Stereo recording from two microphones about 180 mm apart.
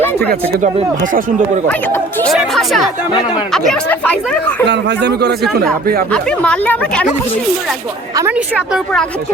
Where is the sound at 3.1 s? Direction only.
25° left (ahead or behind).